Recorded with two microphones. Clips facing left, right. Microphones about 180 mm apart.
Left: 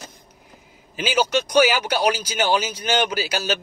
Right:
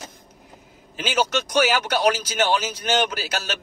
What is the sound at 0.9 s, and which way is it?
Speech, 10° left (ahead or behind).